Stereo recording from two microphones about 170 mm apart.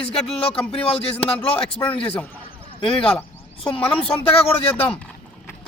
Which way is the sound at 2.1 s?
10° left (ahead or behind).